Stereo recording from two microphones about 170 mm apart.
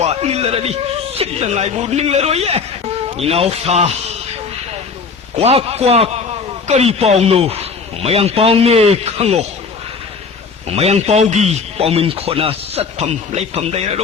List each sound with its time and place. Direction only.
0.0 s a man's voice: 40° right (ahead or behind)
5.4 s a man's voice: 35° right (ahead or behind)
10.7 s a man's voice: 40° right (ahead or behind)